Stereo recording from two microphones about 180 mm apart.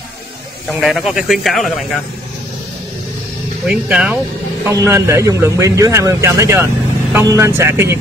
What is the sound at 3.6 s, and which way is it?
Speech, 5° right (ahead or behind).